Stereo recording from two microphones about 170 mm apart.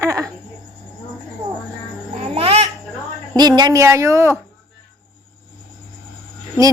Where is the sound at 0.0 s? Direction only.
20° right (ahead or behind).